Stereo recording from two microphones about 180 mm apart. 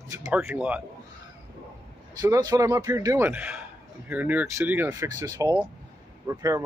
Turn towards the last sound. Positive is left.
turn(degrees=-15)  # may be behind; listen again after turning